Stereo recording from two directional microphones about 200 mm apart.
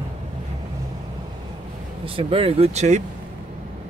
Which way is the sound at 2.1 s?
30° right (ahead or behind).